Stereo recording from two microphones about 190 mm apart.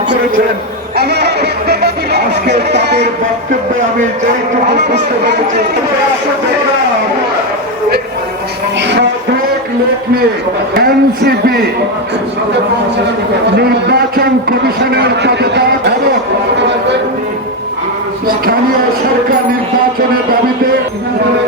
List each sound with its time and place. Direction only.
0.9 s music: 60° right (ahead or behind)
4.7 s speech: 65° right (ahead or behind)
10.8 s a man's voice: 50° right (ahead or behind)
13.5 s speech: 60° right (ahead or behind)
16.6 s a sound: 65° right (ahead or behind)
18.3 s a man's voice: 50° right (ahead or behind)